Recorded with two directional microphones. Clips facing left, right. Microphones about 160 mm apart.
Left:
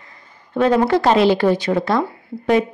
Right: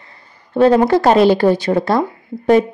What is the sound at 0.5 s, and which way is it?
A woman's voice, 35° right (ahead or behind).